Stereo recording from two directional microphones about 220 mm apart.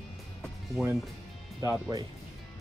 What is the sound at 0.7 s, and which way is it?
Speech, 10° right (ahead or behind).